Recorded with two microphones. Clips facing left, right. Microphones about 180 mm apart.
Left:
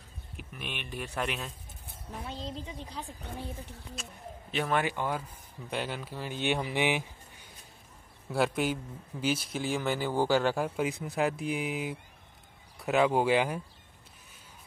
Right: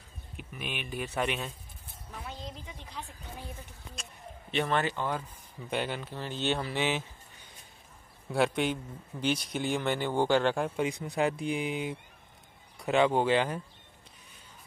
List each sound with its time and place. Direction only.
0.4 s speech: centre (ahead or behind)
2.1 s a woman's voice: 30° left (ahead or behind)
3.9 s speech: centre (ahead or behind)
5.7 s speech: centre (ahead or behind)
8.3 s a man's voice: 5° left (ahead or behind)